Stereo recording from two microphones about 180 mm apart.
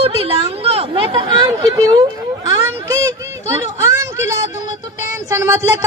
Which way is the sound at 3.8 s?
15° right (ahead or behind).